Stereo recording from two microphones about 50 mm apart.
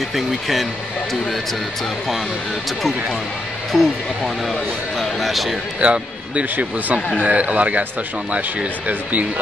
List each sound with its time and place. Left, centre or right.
0.1 s speech: centre
3.7 s speech: centre
5.8 s speech: right